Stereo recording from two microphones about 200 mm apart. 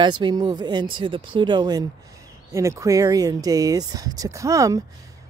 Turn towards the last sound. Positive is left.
turn(degrees=-15)  # may be behind; listen again after turning